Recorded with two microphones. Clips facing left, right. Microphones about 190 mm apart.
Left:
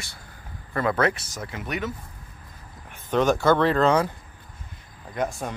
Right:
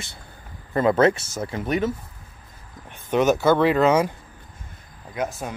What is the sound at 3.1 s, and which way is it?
Speech, 5° right (ahead or behind).